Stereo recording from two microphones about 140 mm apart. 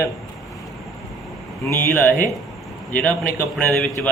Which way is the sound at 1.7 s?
15° left (ahead or behind).